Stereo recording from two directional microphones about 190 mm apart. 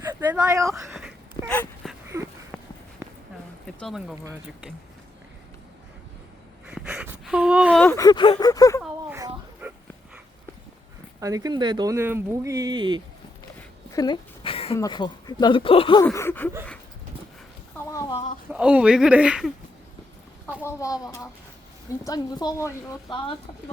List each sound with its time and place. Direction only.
0.0 s speech: 15° right (ahead or behind)
1.5 s dog: 5° left (ahead or behind)
2.5 s run: 5° left (ahead or behind)
3.8 s speech: centre (ahead or behind)
6.7 s a sound: 5° right (ahead or behind)
7.7 s a sound: 5° left (ahead or behind)
7.9 s speech: 20° left (ahead or behind)
9.1 s a sound: 10° right (ahead or behind)
11.2 s speech: 20° right (ahead or behind)
13.9 s a sound: 20° left (ahead or behind)
14.8 s speech: 20° left (ahead or behind)
16.0 s speech: 10° left (ahead or behind)
18.5 s speech: 5° right (ahead or behind)
20.6 s speech: 15° left (ahead or behind)